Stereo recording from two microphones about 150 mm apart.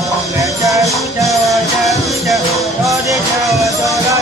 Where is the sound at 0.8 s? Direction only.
Centre (ahead or behind).